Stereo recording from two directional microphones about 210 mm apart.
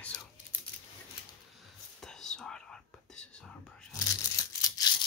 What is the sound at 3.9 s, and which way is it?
Crumpling, 15° left (ahead or behind).